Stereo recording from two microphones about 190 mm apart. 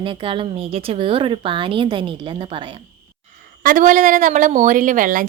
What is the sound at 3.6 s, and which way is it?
A woman's voice, 45° right (ahead or behind).